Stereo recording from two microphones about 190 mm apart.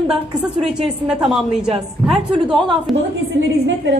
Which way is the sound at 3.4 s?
75° right (ahead or behind).